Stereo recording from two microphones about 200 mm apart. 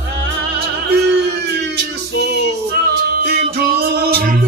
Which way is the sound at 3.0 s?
50° right (ahead or behind).